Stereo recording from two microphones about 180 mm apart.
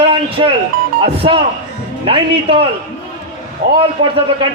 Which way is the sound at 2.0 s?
30° right (ahead or behind).